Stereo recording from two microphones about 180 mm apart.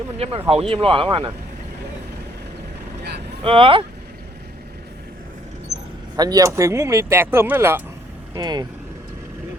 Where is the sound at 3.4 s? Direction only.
30° right (ahead or behind).